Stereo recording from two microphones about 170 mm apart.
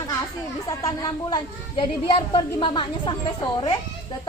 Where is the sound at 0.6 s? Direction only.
20° left (ahead or behind).